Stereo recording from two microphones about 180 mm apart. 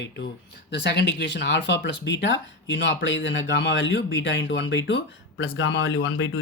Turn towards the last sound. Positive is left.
turn(degrees=90)